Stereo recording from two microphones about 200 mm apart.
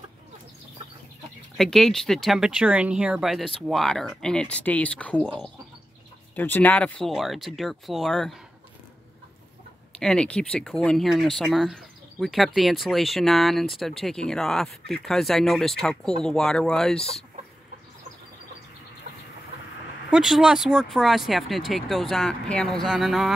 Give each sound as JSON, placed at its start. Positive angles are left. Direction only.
{"t": 1.6, "sound": "speech", "side_deg": 0}
{"t": 9.9, "sound": "speech", "side_deg": 5}
{"t": 20.1, "sound": "speech", "side_deg": 0}